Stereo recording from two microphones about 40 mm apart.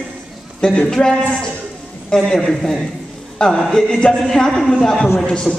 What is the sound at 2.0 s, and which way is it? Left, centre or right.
A man's voice, centre.